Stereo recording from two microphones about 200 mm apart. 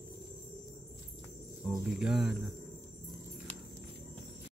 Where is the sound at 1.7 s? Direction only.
Centre (ahead or behind).